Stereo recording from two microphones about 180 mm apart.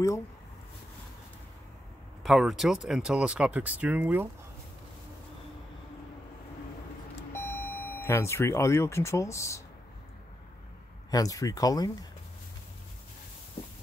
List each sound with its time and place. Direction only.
2.2 s speech: centre (ahead or behind)
7.6 s speech: 10° left (ahead or behind)
11.1 s speech: 20° left (ahead or behind)